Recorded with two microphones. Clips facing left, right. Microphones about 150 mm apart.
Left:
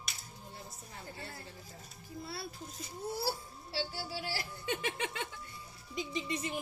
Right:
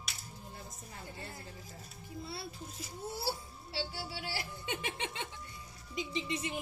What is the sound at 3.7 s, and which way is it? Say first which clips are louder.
Speech: left 2 dB; 25° right (ahead or behind).